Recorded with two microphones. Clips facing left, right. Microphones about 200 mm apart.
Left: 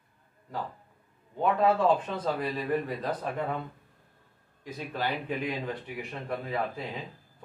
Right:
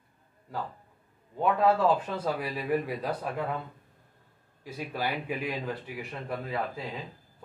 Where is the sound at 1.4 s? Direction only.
5° right (ahead or behind).